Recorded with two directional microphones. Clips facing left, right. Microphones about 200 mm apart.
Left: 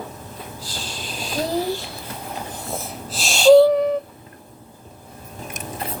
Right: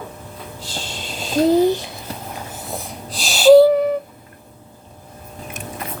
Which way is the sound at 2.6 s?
Centre (ahead or behind).